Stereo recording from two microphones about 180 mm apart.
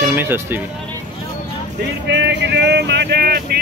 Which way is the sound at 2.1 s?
70° right (ahead or behind).